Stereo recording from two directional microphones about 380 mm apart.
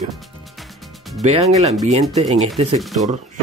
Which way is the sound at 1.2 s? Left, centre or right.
Centre.